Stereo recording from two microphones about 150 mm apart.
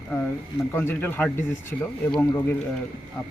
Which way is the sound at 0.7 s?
15° left (ahead or behind).